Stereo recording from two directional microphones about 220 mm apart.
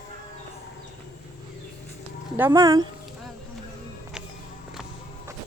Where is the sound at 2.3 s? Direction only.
15° right (ahead or behind).